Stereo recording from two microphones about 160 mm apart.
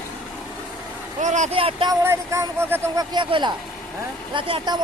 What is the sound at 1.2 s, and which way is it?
Speech, 50° right (ahead or behind).